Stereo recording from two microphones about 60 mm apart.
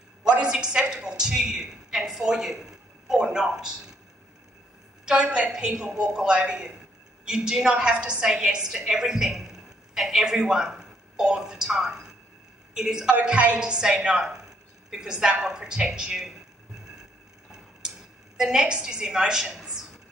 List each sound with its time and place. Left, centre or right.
0.2 s a woman's voice: centre
5.6 s a man's voice: centre
13.2 s a woman's voice: right
15.4 s music: centre
17.5 s a sound: centre